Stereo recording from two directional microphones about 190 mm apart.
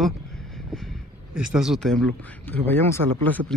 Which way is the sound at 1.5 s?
Centre (ahead or behind).